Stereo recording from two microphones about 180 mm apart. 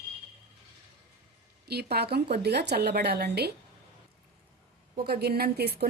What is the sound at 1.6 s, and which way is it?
A woman's voice, 60° right (ahead or behind).